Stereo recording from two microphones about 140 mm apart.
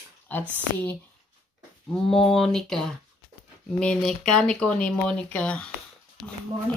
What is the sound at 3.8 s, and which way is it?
Speech, 5° left (ahead or behind).